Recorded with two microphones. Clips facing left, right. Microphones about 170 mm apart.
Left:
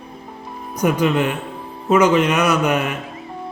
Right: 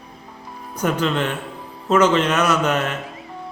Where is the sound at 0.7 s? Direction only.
10° left (ahead or behind).